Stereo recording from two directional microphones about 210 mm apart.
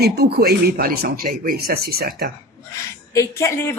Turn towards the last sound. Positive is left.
turn(degrees=15)  # may be behind; listen again after turning